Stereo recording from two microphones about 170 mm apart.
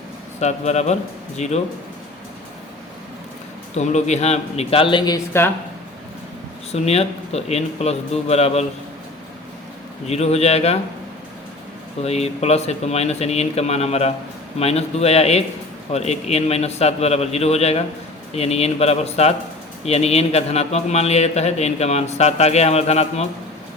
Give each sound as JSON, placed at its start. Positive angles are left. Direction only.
{"t": 0.3, "sound": "speech", "side_deg": 40}
{"t": 3.8, "sound": "speech", "side_deg": 40}
{"t": 6.7, "sound": "speech", "side_deg": 40}
{"t": 10.1, "sound": "speech", "side_deg": 40}
{"t": 12.0, "sound": "speech", "side_deg": 40}